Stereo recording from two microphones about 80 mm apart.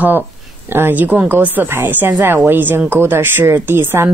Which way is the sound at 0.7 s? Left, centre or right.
Right.